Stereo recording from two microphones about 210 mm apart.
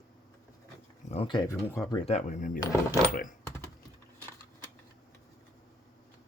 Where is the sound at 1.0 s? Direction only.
25° left (ahead or behind).